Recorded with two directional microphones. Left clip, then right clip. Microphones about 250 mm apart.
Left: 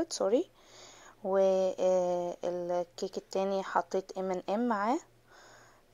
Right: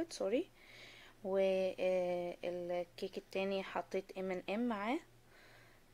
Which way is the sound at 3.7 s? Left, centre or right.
Centre.